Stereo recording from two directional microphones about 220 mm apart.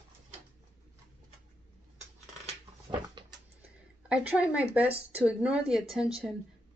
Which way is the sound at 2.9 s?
20° right (ahead or behind).